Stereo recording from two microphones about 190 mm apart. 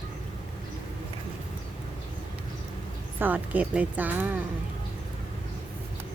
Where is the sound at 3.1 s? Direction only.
10° right (ahead or behind).